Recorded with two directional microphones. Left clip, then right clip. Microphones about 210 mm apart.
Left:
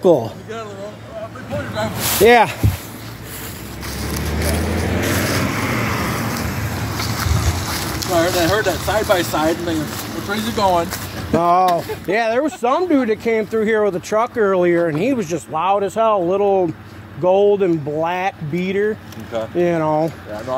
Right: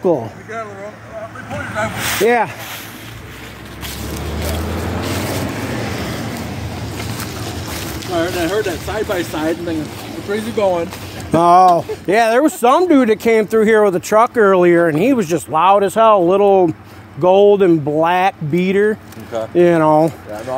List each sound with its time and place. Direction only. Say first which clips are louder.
0.0 s speech: left 2 dB; centre (ahead or behind)
1.5 s speech: right 2 dB; 15° left (ahead or behind)
4.8 s vehicle: left 3 dB; 55° left (ahead or behind); by 6.2 s 40° left (ahead or behind)
8.1 s speech: left 2 dB; 20° left (ahead or behind)
10.3 s speech: even; 35° left (ahead or behind)
11.3 s speech: right 5 dB; 45° right (ahead or behind)